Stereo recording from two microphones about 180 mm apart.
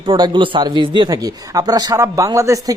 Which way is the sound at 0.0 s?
30° right (ahead or behind).